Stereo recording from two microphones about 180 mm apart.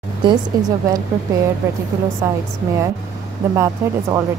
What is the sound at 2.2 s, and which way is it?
Speech, 15° right (ahead or behind).